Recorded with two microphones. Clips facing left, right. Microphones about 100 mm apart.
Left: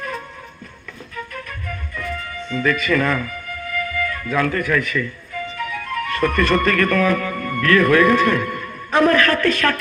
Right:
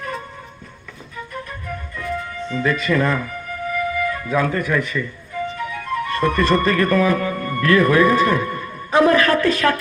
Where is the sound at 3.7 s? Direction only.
15° right (ahead or behind).